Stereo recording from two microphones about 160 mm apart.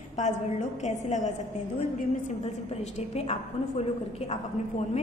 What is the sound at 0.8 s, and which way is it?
Speech, 45° left (ahead or behind).